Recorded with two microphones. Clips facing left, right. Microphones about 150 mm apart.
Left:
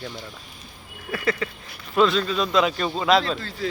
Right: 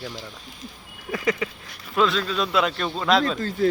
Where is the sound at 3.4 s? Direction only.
45° right (ahead or behind).